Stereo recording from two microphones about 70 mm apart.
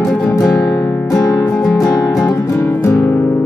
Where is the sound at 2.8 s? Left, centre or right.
Left.